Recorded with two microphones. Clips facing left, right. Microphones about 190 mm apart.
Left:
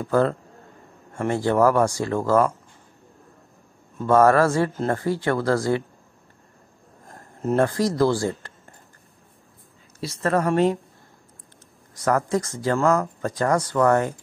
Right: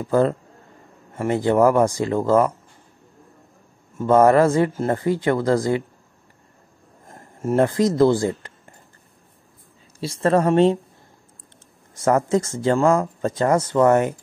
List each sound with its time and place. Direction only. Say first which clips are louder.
0.0 s speech: right 2 dB; 15° right (ahead or behind)
4.0 s speech: right 2 dB; 20° right (ahead or behind)
7.4 s speech: right 3 dB; 20° right (ahead or behind)
9.9 s speech: right 4 dB; 30° right (ahead or behind)
12.0 s speech: right 3 dB; 25° right (ahead or behind)